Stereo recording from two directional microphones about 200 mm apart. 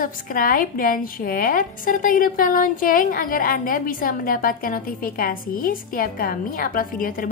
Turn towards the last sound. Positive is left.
turn(degrees=45)  # may be behind; listen again after turning